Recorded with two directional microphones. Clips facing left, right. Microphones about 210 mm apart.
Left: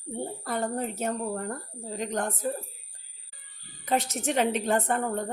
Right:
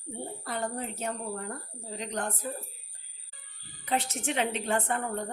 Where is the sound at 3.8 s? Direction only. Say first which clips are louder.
Left 3 dB; 45° left (ahead or behind).